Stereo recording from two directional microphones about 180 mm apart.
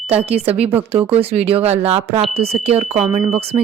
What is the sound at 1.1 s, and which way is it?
Speech, 30° right (ahead or behind).